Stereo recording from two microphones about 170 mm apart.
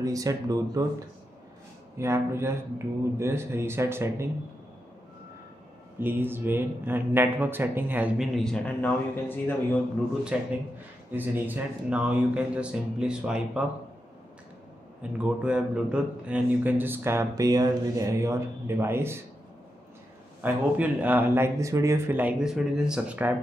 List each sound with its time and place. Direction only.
0.0 s speech: 20° right (ahead or behind)
2.0 s a man's voice: 15° right (ahead or behind)
5.9 s a man's voice: 10° right (ahead or behind)
8.4 s speech: 5° left (ahead or behind)
10.3 s a man's voice: 5° right (ahead or behind)
15.0 s a man's voice: 5° right (ahead or behind)
20.4 s a man's voice: 10° right (ahead or behind)